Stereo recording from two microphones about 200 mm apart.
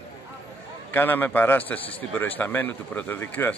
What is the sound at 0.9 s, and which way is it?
A man's voice, 10° left (ahead or behind).